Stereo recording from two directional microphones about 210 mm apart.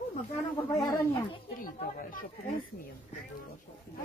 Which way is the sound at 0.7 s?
25° left (ahead or behind).